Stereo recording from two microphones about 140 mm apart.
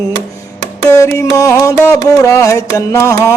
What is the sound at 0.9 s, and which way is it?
Music, 20° left (ahead or behind).